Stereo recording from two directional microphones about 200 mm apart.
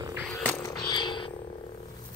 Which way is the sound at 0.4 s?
10° left (ahead or behind).